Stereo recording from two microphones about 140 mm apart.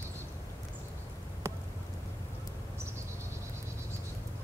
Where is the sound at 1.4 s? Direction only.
20° right (ahead or behind).